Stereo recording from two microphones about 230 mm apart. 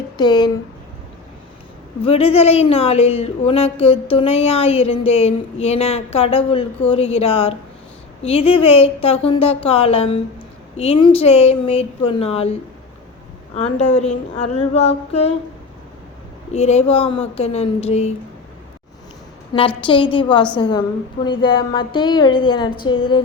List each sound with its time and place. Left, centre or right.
0.2 s a woman's voice: centre
2.0 s a woman's voice: left
13.9 s a woman's voice: left
16.5 s a woman's voice: left
19.5 s a woman's voice: left